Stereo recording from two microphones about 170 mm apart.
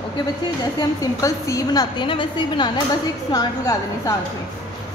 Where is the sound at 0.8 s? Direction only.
20° left (ahead or behind).